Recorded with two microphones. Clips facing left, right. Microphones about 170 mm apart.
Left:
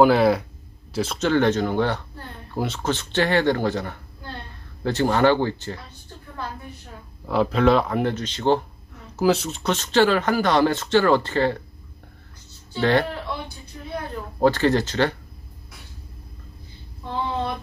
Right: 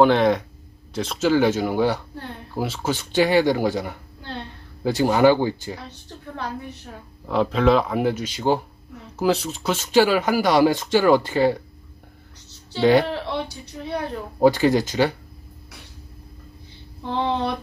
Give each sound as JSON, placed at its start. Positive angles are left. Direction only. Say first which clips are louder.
{"t": 0.0, "sound": "speech", "louder": "even", "side_deg": 5}
{"t": 5.9, "sound": "a woman's voice", "louder": "right 5 dB", "side_deg": -75}
{"t": 7.2, "sound": "speech", "louder": "even", "side_deg": 0}
{"t": 13.1, "sound": "speech", "louder": "right 4 dB", "side_deg": -75}
{"t": 14.4, "sound": "speech", "louder": "right 2 dB", "side_deg": -10}
{"t": 17.0, "sound": "a sound", "louder": "right 3 dB", "side_deg": -80}